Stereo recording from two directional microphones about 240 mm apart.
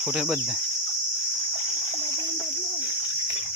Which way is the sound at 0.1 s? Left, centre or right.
Centre.